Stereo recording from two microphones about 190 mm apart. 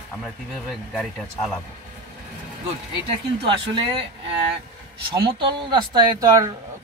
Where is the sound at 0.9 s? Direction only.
Centre (ahead or behind).